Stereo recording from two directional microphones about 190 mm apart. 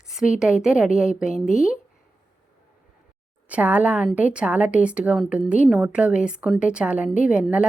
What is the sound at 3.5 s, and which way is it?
A woman's voice, 10° right (ahead or behind).